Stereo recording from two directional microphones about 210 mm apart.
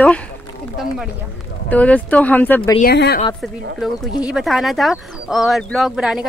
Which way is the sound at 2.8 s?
50° left (ahead or behind).